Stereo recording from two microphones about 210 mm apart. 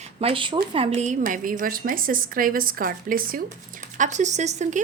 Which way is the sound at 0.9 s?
35° right (ahead or behind).